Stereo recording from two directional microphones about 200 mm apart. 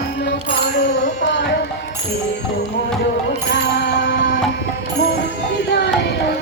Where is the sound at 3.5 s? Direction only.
55° left (ahead or behind).